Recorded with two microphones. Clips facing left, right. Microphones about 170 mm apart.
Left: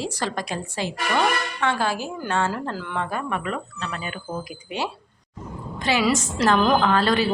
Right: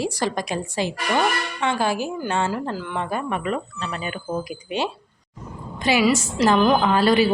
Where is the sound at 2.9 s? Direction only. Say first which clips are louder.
Right 1 dB; 20° right (ahead or behind).